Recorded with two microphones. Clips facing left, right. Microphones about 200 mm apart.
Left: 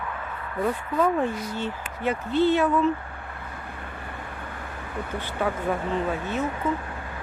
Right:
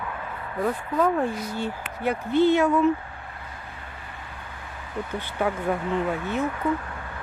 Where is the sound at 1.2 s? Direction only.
10° right (ahead or behind).